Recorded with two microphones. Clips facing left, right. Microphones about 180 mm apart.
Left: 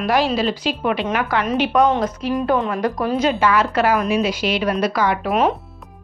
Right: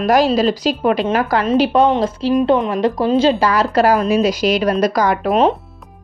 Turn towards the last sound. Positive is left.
turn(degrees=-35)  # may be behind; listen again after turning